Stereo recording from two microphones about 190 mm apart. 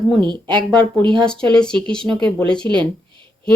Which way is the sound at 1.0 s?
25° right (ahead or behind).